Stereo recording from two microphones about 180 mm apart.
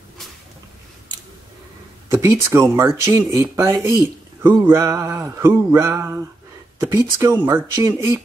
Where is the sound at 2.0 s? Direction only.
15° right (ahead or behind).